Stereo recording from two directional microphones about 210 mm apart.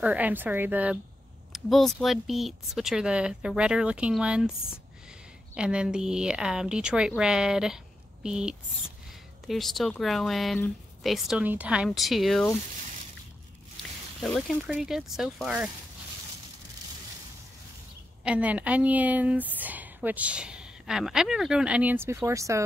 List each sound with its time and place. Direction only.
0.0 s a woman's voice: 5° right (ahead or behind)
5.5 s speech: 5° right (ahead or behind)
14.2 s speech: centre (ahead or behind)
18.2 s a woman's voice: 5° right (ahead or behind)